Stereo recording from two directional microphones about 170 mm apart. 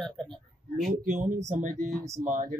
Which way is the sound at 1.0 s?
45° right (ahead or behind).